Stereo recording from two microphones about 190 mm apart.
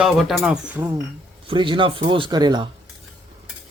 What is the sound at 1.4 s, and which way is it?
Speech, 25° right (ahead or behind).